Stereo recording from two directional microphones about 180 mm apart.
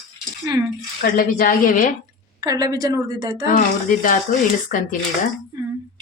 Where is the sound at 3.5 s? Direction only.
50° left (ahead or behind).